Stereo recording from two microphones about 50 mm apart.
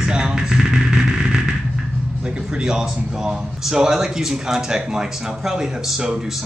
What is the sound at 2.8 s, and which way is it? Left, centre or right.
Speech, centre.